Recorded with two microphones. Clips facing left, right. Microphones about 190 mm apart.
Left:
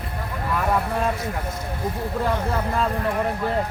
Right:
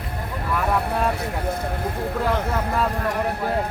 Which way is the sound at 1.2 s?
60° right (ahead or behind).